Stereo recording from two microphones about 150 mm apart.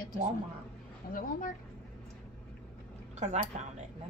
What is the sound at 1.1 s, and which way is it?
Speech, 65° left (ahead or behind).